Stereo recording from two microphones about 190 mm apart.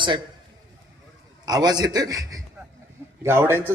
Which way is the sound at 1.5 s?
20° right (ahead or behind).